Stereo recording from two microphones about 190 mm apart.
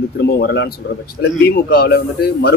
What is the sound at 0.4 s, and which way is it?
A man's voice, 60° left (ahead or behind).